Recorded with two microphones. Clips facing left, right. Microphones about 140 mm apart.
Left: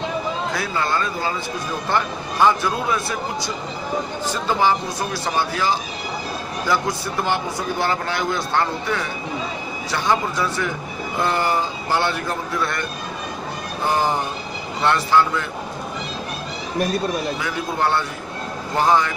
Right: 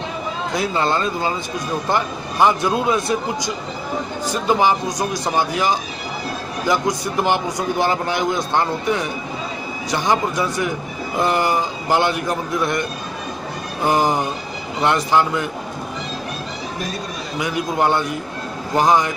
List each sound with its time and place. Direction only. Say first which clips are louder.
0.6 s a man's voice: right 7 dB; 25° right (ahead or behind)
13.8 s a man's voice: right 3 dB; 15° right (ahead or behind)
17.4 s a man's voice: right 3 dB; 15° right (ahead or behind)